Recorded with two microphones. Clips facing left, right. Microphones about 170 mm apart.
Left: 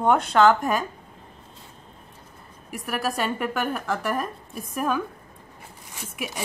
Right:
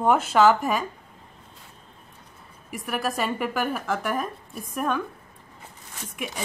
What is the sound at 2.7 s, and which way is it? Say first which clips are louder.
A woman's voice: even; centre (ahead or behind).